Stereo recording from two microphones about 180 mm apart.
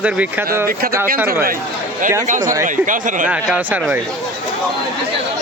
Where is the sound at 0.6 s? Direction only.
55° right (ahead or behind).